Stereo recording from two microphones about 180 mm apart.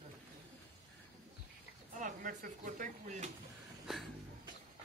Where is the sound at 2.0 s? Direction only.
45° right (ahead or behind).